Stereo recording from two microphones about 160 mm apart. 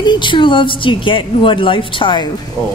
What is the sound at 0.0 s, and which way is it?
A woman's voice, 30° left (ahead or behind).